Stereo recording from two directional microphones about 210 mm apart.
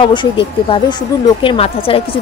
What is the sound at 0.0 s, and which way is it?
Speech, 25° left (ahead or behind).